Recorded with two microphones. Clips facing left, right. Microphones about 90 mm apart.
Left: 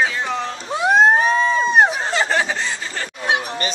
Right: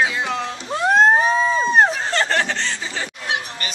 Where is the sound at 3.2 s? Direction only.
25° left (ahead or behind).